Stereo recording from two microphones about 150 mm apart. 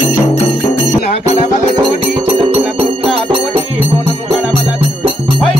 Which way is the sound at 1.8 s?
40° right (ahead or behind).